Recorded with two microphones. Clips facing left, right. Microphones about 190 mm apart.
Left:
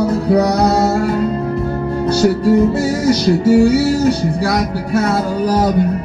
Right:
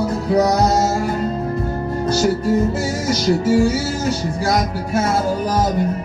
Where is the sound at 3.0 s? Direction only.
65° left (ahead or behind).